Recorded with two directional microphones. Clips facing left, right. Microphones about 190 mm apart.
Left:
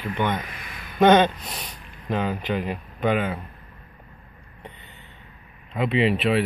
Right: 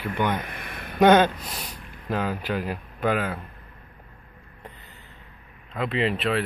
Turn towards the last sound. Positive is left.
turn(degrees=5)  # may be behind; listen again after turning